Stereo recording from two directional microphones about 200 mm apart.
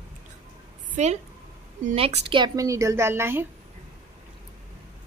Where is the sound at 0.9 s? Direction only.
35° right (ahead or behind); by 3.5 s 10° right (ahead or behind).